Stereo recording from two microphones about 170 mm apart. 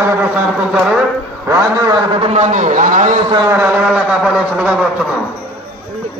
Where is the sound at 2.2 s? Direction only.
45° right (ahead or behind).